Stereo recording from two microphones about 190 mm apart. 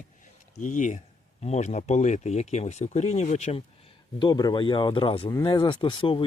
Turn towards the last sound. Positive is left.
turn(degrees=25)  # may be behind; listen again after turning